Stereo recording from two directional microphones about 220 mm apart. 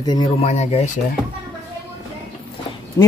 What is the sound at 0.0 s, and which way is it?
Speech, 20° left (ahead or behind).